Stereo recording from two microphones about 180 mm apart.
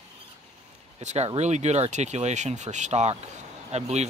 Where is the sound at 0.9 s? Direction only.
35° right (ahead or behind).